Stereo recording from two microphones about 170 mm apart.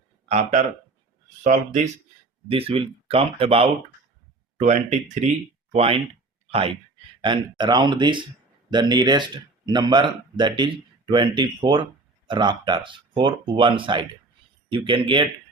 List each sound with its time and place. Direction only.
0.3 s speech: 40° right (ahead or behind)
2.5 s speech: 35° right (ahead or behind)